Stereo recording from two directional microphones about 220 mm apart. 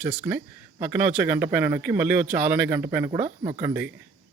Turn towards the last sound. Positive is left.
turn(degrees=-10)  # may be behind; listen again after turning